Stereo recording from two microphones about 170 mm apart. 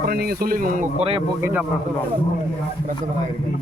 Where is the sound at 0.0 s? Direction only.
60° right (ahead or behind); by 1.2 s 35° right (ahead or behind).